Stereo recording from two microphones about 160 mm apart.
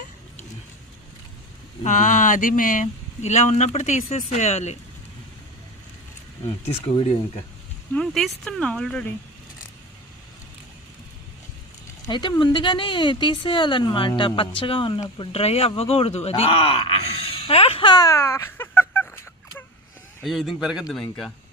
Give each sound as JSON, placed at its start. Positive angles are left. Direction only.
{"t": 1.8, "sound": "speech", "side_deg": 50}
{"t": 7.9, "sound": "speech", "side_deg": 0}
{"t": 12.0, "sound": "speech", "side_deg": 25}
{"t": 20.2, "sound": "speech", "side_deg": 0}